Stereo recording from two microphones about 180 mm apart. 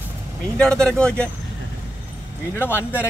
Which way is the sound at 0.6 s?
5° left (ahead or behind).